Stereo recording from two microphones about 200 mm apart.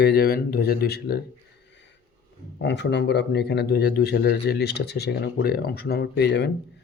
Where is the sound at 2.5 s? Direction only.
60° left (ahead or behind).